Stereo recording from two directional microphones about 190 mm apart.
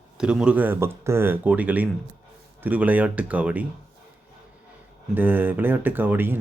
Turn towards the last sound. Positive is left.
turn(degrees=-10)  # may be behind; listen again after turning